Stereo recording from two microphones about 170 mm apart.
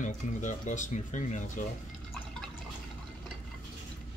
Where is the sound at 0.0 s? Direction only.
45° left (ahead or behind).